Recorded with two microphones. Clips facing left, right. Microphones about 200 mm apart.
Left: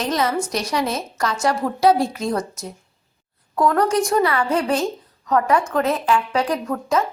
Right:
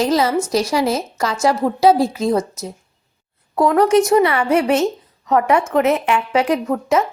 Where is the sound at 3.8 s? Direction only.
20° right (ahead or behind).